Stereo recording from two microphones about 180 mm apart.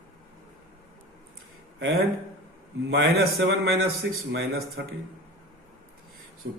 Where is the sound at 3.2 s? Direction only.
60° right (ahead or behind).